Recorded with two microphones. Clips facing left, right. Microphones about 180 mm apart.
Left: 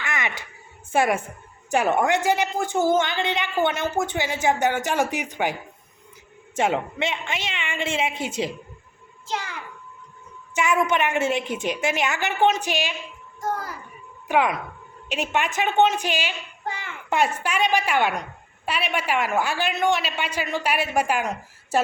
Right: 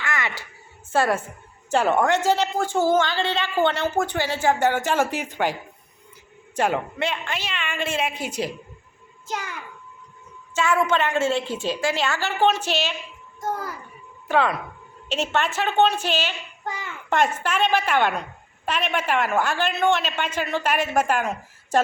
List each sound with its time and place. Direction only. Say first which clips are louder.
0.0 s a sound: right 1 dB; 20° left (ahead or behind)
0.9 s a woman's voice: even; 15° left (ahead or behind)
6.6 s a woman's voice: even; 25° left (ahead or behind)
10.5 s a woman's voice: even; 15° left (ahead or behind)
14.3 s a woman's voice: even; 15° left (ahead or behind)